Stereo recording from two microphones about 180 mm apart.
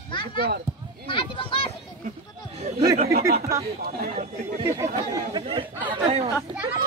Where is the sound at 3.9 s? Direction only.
55° right (ahead or behind).